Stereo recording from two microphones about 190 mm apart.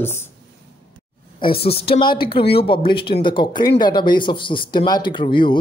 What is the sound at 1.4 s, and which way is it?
Speech, 30° left (ahead or behind).